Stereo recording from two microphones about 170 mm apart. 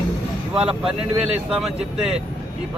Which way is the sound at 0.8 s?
5° right (ahead or behind).